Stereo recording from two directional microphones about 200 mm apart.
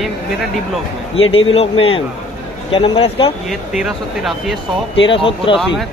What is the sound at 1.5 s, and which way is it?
A man's voice, 30° left (ahead or behind).